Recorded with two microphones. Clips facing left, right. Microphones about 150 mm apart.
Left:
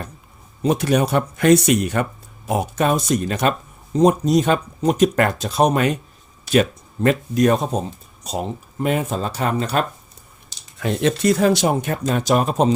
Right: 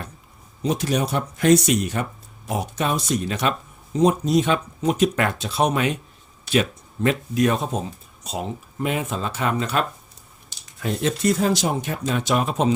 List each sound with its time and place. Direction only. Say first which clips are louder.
0.6 s speech: left 5 dB; 55° left (ahead or behind); by 9.8 s 40° left (ahead or behind)
10.8 s speech: left 4 dB; 85° left
11.2 s speech: left 4 dB; 75° left (ahead or behind); by 11.9 s 55° left (ahead or behind)
12.0 s speech: left 3 dB; 40° left (ahead or behind)